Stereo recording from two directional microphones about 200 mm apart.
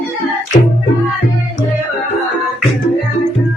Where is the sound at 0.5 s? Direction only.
30° left (ahead or behind).